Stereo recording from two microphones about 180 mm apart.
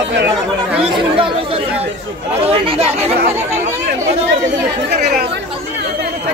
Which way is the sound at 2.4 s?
30° right (ahead or behind).